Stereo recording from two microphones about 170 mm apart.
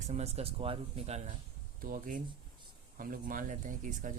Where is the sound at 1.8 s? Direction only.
55° right (ahead or behind).